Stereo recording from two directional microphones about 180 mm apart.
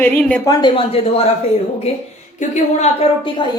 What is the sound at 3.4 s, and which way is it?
Speech, 25° left (ahead or behind).